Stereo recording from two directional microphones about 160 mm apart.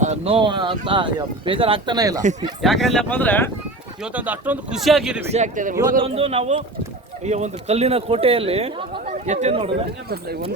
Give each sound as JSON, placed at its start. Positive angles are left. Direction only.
{"t": 0.0, "sound": "speech", "side_deg": -45}
{"t": 0.3, "sound": "speech", "side_deg": -30}
{"t": 2.6, "sound": "speech", "side_deg": 0}
{"t": 4.0, "sound": "speech", "side_deg": -10}
{"t": 5.3, "sound": "a man's voice", "side_deg": -50}
{"t": 10.1, "sound": "speech", "side_deg": -75}